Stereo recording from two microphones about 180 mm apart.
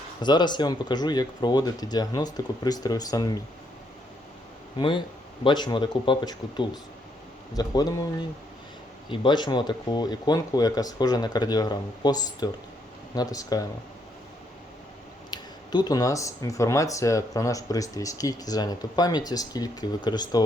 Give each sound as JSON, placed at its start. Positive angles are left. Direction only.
{"t": 0.2, "sound": "speech", "side_deg": 25}
{"t": 4.8, "sound": "speech", "side_deg": 25}
{"t": 9.0, "sound": "speech", "side_deg": 25}
{"t": 15.3, "sound": "speech", "side_deg": 25}